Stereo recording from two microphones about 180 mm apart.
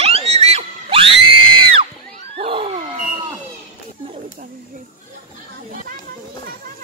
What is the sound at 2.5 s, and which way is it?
Wild animals, 30° right (ahead or behind).